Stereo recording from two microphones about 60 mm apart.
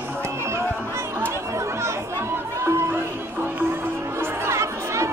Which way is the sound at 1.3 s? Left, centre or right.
Right.